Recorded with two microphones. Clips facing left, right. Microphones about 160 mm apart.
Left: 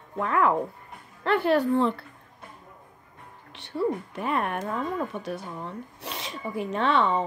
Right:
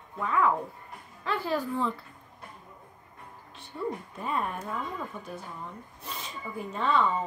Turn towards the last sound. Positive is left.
turn(degrees=75)  # may be behind; listen again after turning